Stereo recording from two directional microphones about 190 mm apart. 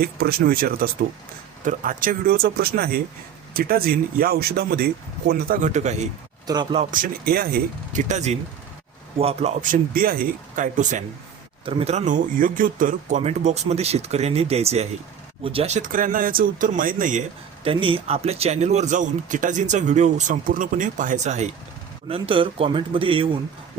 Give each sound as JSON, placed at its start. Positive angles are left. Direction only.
{"t": 0.0, "sound": "speech", "side_deg": -55}
{"t": 5.3, "sound": "speech", "side_deg": -45}
{"t": 6.5, "sound": "a man's voice", "side_deg": -25}
{"t": 6.9, "sound": "speech", "side_deg": -50}
{"t": 11.6, "sound": "speech", "side_deg": -30}
{"t": 17.6, "sound": "a man's voice", "side_deg": -30}